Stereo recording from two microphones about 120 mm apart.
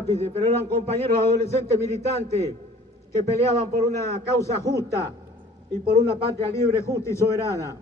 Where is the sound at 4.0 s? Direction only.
25° left (ahead or behind).